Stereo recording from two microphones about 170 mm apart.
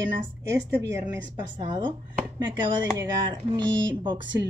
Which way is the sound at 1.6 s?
25° right (ahead or behind).